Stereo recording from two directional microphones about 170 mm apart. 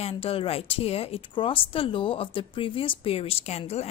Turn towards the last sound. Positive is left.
turn(degrees=40)  # may be behind; listen again after turning